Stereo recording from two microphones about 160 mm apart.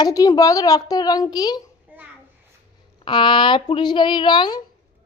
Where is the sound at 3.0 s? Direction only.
30° left (ahead or behind).